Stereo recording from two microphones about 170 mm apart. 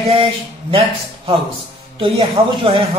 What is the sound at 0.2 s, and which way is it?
Speech, 30° right (ahead or behind).